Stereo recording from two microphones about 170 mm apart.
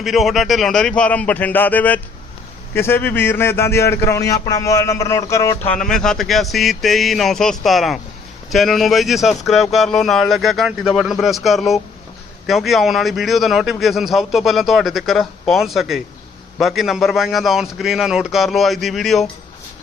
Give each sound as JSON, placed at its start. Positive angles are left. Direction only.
{"t": 0.0, "sound": "a man's voice", "side_deg": 0}
{"t": 5.7, "sound": "speech", "side_deg": 5}